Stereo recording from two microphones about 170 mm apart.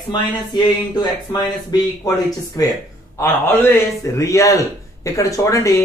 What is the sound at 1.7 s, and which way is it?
A man's voice, 20° left (ahead or behind).